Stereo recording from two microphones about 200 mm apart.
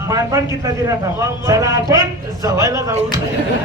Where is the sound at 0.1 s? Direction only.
15° right (ahead or behind).